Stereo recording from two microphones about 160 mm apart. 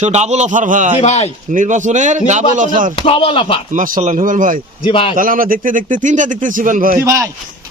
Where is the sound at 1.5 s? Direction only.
50° right (ahead or behind).